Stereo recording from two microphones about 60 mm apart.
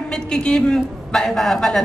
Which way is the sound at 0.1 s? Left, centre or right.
Centre.